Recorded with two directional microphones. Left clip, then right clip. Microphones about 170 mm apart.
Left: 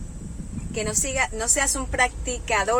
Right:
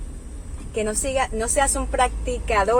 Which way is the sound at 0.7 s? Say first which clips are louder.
Right 2 dB; 35° left (ahead or behind).